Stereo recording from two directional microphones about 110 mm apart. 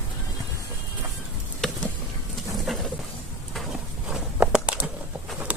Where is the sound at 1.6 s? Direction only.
5° left (ahead or behind).